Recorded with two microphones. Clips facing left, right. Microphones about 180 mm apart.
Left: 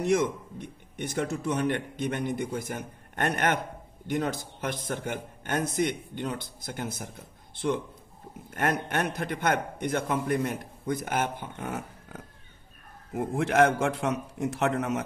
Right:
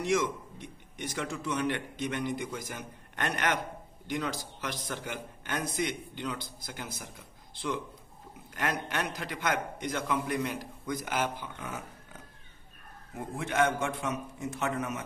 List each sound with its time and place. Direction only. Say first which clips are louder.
0.0 s a man's voice: left 4 dB; 50° left (ahead or behind)
13.1 s a man's voice: left 8 dB; 80° left